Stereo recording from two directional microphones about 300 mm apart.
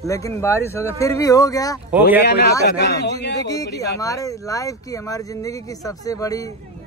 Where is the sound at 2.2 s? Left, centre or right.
Left.